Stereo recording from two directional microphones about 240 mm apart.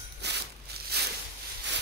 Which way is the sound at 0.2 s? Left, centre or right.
Right.